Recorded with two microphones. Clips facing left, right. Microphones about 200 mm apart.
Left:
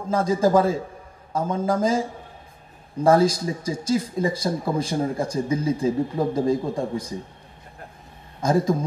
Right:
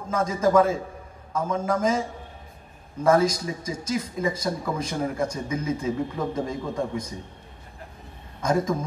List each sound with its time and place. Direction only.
0.1 s speech: 30° left (ahead or behind)
8.4 s speech: 30° left (ahead or behind)